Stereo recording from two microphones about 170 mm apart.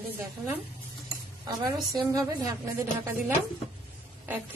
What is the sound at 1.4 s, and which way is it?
A woman's voice, 25° right (ahead or behind).